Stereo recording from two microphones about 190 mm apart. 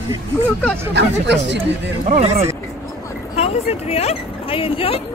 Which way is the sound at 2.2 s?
30° right (ahead or behind).